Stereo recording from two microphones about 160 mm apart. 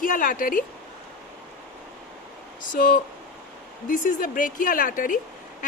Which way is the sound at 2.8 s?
55° left (ahead or behind).